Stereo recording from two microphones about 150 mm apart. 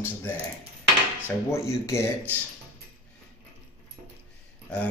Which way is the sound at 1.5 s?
20° left (ahead or behind).